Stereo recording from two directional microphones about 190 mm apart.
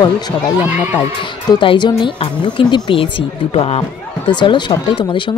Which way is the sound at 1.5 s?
25° left (ahead or behind).